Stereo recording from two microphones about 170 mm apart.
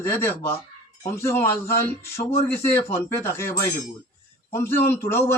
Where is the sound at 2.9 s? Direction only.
15° left (ahead or behind).